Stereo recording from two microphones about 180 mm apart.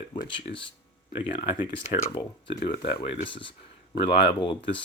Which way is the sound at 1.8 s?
40° left (ahead or behind).